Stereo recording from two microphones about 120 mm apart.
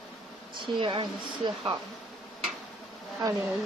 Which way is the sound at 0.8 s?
45° right (ahead or behind).